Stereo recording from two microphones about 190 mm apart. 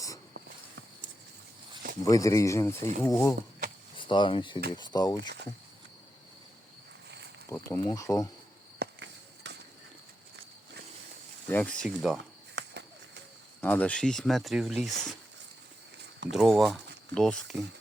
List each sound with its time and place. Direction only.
2.0 s speech: 20° left (ahead or behind)
3.9 s speech: 25° left (ahead or behind)
7.4 s speech: 15° left (ahead or behind)
8.8 s walk: 65° right (ahead or behind)
11.4 s speech: 10° left (ahead or behind)
12.6 s a sound: 65° right (ahead or behind)
13.6 s speech: 10° left (ahead or behind)
16.3 s speech: centre (ahead or behind)